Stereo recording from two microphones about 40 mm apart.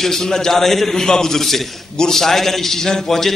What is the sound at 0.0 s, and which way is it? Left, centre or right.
A man's voice, centre.